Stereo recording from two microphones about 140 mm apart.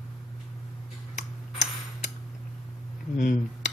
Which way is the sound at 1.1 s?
60° left (ahead or behind).